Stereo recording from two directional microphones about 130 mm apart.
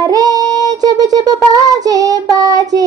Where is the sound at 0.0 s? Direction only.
30° right (ahead or behind).